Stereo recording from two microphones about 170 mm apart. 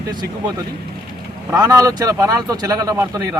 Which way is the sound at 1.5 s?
20° right (ahead or behind).